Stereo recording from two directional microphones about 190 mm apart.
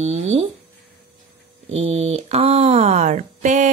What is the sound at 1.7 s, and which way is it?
A woman's voice, 35° right (ahead or behind).